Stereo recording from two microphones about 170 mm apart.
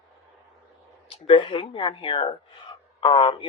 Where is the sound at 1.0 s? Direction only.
30° left (ahead or behind).